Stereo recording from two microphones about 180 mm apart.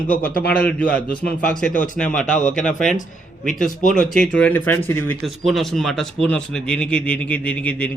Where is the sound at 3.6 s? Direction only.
45° left (ahead or behind).